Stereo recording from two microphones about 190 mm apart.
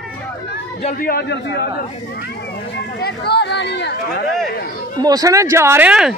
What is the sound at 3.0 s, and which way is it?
Speech, 60° left (ahead or behind).